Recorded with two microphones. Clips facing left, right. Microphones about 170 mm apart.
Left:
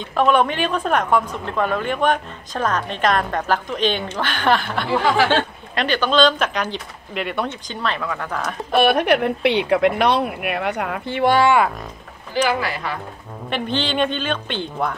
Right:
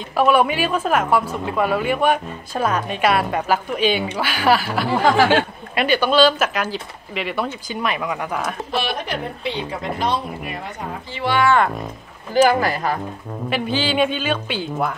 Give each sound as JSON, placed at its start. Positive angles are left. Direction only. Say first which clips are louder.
{"t": 0.1, "sound": "a woman's voice", "louder": "right 1 dB", "side_deg": -5}
{"t": 5.0, "sound": "speech", "louder": "right 3 dB", "side_deg": -45}
{"t": 5.3, "sound": "a woman's voice", "louder": "right 2 dB", "side_deg": -10}
{"t": 8.7, "sound": "speech", "louder": "left 10 dB", "side_deg": 60}
{"t": 12.4, "sound": "speech", "louder": "right 4 dB", "side_deg": -45}
{"t": 13.5, "sound": "a woman's voice", "louder": "right 1 dB", "side_deg": -5}